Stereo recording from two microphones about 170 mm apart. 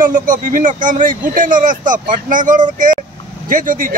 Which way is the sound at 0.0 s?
50° right (ahead or behind).